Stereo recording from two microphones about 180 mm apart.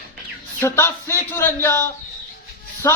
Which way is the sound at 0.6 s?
15° left (ahead or behind).